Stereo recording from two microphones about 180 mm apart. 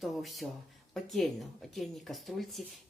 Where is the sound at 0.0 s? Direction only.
Centre (ahead or behind).